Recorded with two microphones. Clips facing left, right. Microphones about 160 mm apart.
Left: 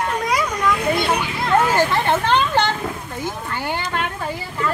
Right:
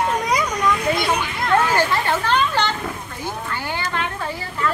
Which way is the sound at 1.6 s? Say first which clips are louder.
Left 2 dB; 20° left (ahead or behind).